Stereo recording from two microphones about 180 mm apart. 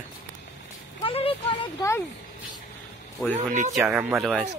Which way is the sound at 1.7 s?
15° left (ahead or behind).